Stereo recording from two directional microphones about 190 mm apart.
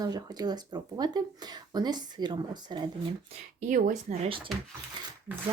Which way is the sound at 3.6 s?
40° right (ahead or behind).